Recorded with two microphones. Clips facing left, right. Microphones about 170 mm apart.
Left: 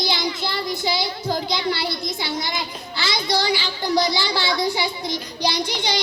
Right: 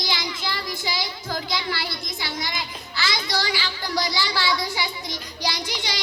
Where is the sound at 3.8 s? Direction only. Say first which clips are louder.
Left 6 dB; 25° left (ahead or behind).